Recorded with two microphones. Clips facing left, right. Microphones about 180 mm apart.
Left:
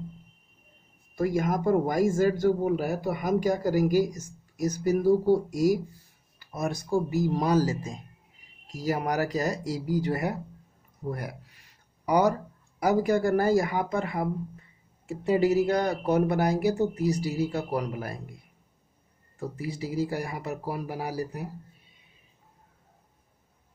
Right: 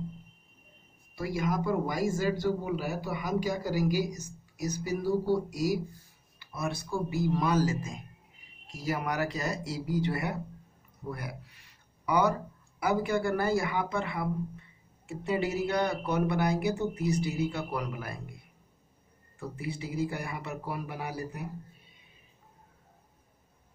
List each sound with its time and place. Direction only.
1.1 s a man's voice: 45° left (ahead or behind)
11.1 s a sound: 40° left (ahead or behind)
12.8 s speech: 40° left (ahead or behind)
19.3 s speech: 40° left (ahead or behind)